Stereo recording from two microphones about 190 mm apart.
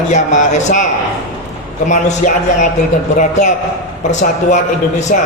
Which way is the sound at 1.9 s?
40° left (ahead or behind).